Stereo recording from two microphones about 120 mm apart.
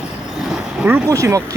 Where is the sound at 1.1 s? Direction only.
25° right (ahead or behind).